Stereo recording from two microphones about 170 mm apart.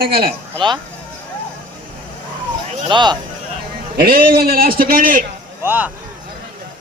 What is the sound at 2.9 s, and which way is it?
Speech, 25° right (ahead or behind).